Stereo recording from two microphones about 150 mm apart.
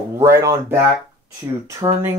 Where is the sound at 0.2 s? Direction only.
20° right (ahead or behind).